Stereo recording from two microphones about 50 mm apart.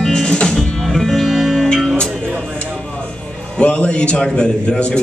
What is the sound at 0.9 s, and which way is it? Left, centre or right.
Music, centre.